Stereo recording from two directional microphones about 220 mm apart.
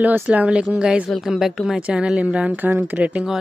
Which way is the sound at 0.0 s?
5° right (ahead or behind).